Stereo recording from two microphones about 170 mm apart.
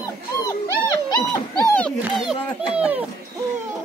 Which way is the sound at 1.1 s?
25° left (ahead or behind).